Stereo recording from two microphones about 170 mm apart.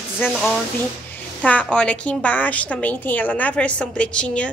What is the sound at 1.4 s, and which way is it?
A woman's voice, 5° left (ahead or behind).